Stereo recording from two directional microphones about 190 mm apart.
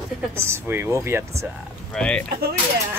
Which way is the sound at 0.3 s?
10° right (ahead or behind).